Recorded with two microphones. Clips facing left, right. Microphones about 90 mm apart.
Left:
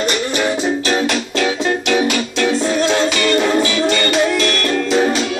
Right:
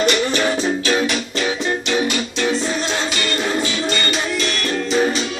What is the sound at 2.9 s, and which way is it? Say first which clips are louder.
Music: left 7 dB; 85° left.